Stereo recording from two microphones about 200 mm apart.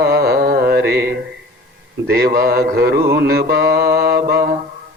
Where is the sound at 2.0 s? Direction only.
55° right (ahead or behind).